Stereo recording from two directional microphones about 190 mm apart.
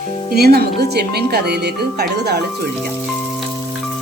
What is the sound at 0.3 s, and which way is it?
Music, 55° right (ahead or behind).